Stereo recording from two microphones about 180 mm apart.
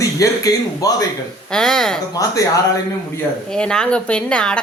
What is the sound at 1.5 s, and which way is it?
Speech, 5° left (ahead or behind).